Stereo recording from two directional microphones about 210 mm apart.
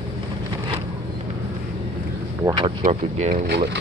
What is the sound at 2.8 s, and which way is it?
Speech, 30° right (ahead or behind).